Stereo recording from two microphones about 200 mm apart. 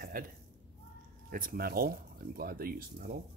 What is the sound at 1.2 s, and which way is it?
Speech, 45° right (ahead or behind).